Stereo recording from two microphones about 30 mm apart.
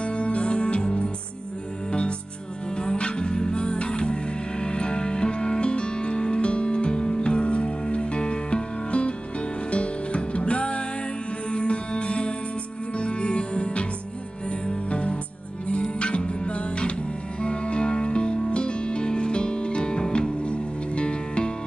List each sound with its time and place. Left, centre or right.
0.0 s music: left